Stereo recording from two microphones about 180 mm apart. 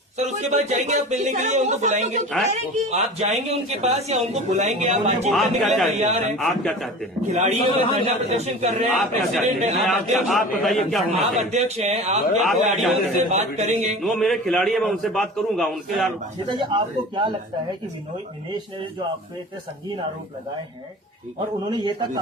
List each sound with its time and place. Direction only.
0.3 s speech: 40° right (ahead or behind)
5.3 s a man's voice: centre (ahead or behind)
6.0 s speech: 35° right (ahead or behind)
6.4 s a man's voice: centre (ahead or behind)
7.3 s speech: 35° right (ahead or behind)
9.0 s a man's voice: centre (ahead or behind)
9.5 s speech: 40° right (ahead or behind)
9.8 s a man's voice: centre (ahead or behind)
11.1 s speech: 40° right (ahead or behind)
12.7 s a man's voice: centre (ahead or behind)
13.3 s speech: 40° right (ahead or behind)
14.0 s a man's voice: centre (ahead or behind)
16.5 s a man's voice: 25° right (ahead or behind)
21.7 s a man's voice: 25° right (ahead or behind)